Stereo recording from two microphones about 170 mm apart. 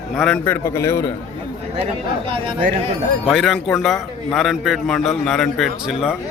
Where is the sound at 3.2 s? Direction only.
Centre (ahead or behind).